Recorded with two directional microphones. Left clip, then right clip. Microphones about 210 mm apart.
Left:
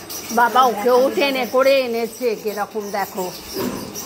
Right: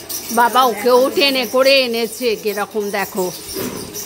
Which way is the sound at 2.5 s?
45° right (ahead or behind).